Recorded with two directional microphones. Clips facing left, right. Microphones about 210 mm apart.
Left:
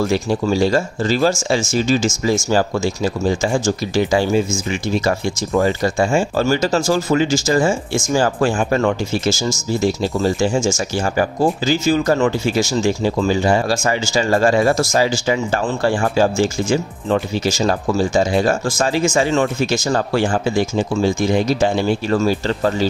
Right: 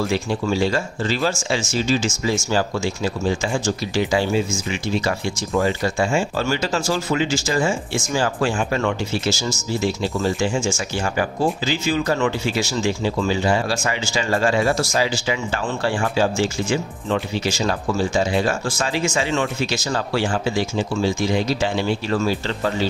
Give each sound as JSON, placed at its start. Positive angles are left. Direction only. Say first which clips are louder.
{"t": 0.1, "sound": "speech", "louder": "left 4 dB", "side_deg": 40}